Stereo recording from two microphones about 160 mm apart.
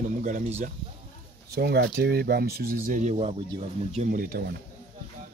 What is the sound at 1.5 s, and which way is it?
Speech, 85° right.